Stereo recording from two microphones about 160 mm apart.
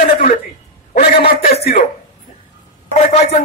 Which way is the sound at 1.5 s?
40° left (ahead or behind).